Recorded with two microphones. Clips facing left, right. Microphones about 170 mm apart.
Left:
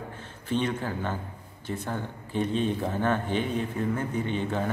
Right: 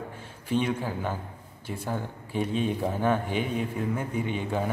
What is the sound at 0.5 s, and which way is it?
Speech, 10° right (ahead or behind).